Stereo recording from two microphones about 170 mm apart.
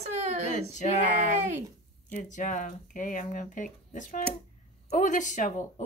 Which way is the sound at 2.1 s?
50° left (ahead or behind).